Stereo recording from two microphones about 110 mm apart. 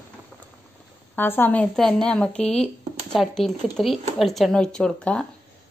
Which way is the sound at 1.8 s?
5° left (ahead or behind).